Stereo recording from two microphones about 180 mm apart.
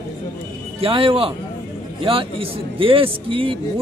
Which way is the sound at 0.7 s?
30° right (ahead or behind).